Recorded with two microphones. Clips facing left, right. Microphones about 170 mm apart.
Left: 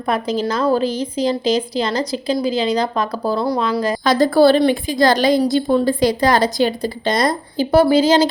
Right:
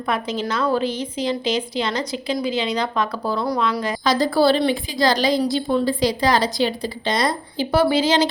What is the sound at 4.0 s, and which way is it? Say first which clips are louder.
Speech: left 5 dB; 50° left (ahead or behind).